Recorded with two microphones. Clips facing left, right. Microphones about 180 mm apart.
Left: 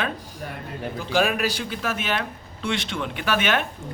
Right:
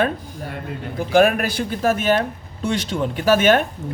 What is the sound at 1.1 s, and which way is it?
A man's voice, 55° right (ahead or behind).